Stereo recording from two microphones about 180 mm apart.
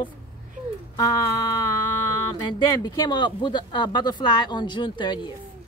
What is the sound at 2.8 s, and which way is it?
Speech, 20° left (ahead or behind).